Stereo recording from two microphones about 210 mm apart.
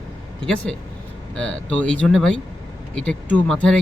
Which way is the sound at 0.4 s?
5° left (ahead or behind).